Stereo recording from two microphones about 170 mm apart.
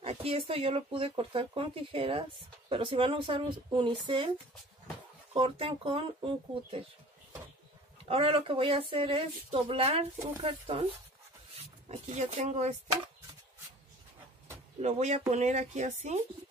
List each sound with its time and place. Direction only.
0.0 s speech: 35° right (ahead or behind)
5.3 s speech: 35° right (ahead or behind)
8.0 s speech: 35° right (ahead or behind)
11.9 s speech: 40° right (ahead or behind)
14.8 s speech: 45° right (ahead or behind)